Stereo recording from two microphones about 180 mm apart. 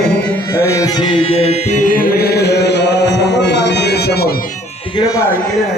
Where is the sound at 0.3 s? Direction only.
10° left (ahead or behind); by 4.5 s 55° left (ahead or behind).